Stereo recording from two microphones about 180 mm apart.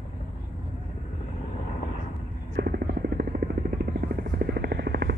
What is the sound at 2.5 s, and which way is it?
Helicopter, 60° right (ahead or behind).